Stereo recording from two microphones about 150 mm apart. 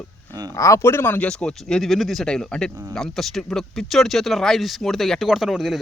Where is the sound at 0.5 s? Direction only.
20° left (ahead or behind).